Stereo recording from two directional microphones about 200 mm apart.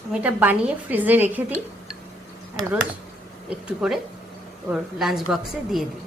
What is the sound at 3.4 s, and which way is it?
Speech, 5° right (ahead or behind).